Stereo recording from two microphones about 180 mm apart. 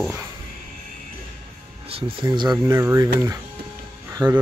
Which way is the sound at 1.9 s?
30° right (ahead or behind).